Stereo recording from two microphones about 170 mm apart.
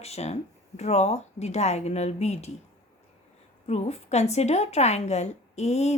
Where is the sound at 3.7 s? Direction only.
40° left (ahead or behind).